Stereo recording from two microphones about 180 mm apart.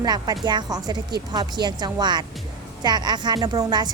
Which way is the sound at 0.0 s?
20° right (ahead or behind).